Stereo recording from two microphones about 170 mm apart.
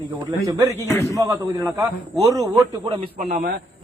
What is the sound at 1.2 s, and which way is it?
A man's voice, 20° right (ahead or behind).